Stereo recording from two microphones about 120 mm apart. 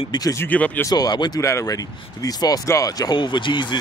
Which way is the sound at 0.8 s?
35° left (ahead or behind).